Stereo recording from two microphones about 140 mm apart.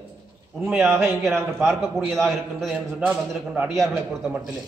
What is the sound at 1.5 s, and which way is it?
A man's voice, centre (ahead or behind).